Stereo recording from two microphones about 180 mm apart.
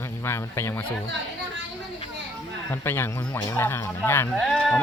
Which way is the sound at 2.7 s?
15° left (ahead or behind).